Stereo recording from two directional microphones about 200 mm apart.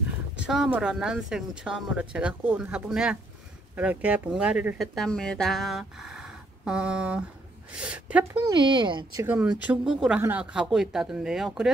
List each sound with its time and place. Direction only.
0.4 s a woman's voice: 5° right (ahead or behind)